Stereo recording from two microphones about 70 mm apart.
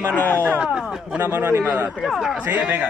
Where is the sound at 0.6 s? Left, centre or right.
Centre.